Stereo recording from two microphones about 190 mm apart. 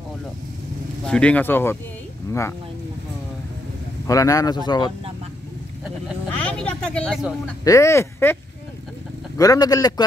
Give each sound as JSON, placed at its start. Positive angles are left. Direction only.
{"t": 1.0, "sound": "speech", "side_deg": 5}
{"t": 4.1, "sound": "a man's voice", "side_deg": 15}
{"t": 6.3, "sound": "speech", "side_deg": 5}
{"t": 7.6, "sound": "speech", "side_deg": 15}
{"t": 9.4, "sound": "a man's voice", "side_deg": 20}